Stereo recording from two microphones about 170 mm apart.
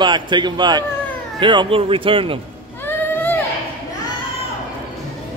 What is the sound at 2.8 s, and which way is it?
Boat, 10° left (ahead or behind).